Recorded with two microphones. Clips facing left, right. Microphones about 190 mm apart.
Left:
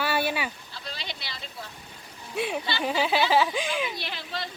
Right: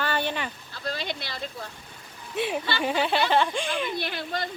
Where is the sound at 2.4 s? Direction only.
Centre (ahead or behind).